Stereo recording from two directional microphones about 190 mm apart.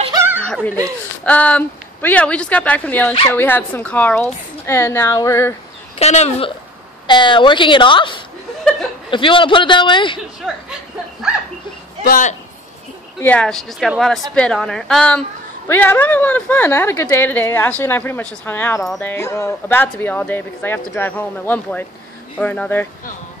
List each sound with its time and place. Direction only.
0.4 s chuckle: 10° left (ahead or behind)
1.2 s a woman's voice: 5° left (ahead or behind)
5.9 s a woman's voice: 35° left (ahead or behind)
10.4 s a sound: 5° right (ahead or behind)
12.0 s speech: 45° left (ahead or behind)
13.2 s a woman's voice: 5° left (ahead or behind)